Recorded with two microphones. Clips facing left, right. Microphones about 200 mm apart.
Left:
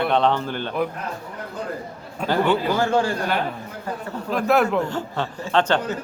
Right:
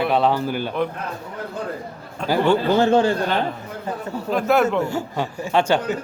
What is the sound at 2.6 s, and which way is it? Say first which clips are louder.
Speech: right 4 dB; 25° right (ahead or behind).